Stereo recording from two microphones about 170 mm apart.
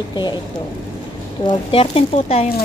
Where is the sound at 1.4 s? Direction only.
35° left (ahead or behind).